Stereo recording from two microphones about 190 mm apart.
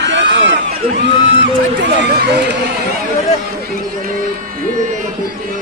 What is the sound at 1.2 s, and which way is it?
Speech, 75° right (ahead or behind).